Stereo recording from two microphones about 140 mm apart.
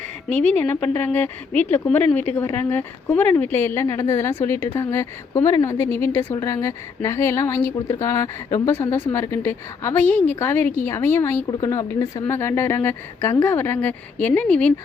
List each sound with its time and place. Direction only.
0.3 s speech: 10° left (ahead or behind)